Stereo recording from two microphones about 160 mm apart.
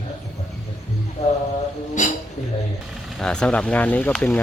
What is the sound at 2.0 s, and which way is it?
Speech, 50° left (ahead or behind).